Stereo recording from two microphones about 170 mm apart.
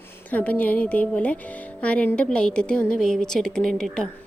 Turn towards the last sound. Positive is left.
turn(degrees=5)  # may be behind; listen again after turning